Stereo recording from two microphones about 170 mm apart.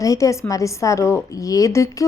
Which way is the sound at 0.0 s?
20° left (ahead or behind).